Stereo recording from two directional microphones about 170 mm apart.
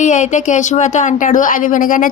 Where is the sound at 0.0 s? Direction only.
45° left (ahead or behind).